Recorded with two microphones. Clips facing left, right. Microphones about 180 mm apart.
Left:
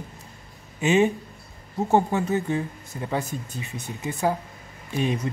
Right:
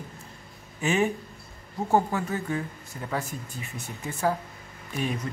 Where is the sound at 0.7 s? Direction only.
20° left (ahead or behind).